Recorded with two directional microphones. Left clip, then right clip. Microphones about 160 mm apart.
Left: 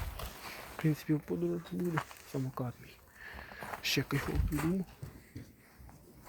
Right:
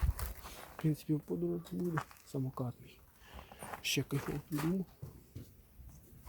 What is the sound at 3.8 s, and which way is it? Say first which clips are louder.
Speech: left 3 dB; 15° right (ahead or behind).